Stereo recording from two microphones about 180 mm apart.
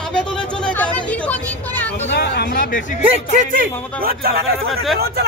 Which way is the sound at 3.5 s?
55° right (ahead or behind).